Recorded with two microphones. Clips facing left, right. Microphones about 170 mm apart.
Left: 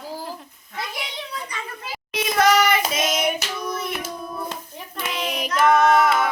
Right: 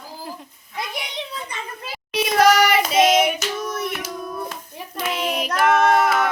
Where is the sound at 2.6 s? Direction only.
75° right (ahead or behind).